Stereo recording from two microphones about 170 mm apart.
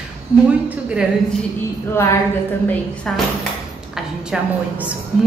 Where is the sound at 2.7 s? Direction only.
5° left (ahead or behind).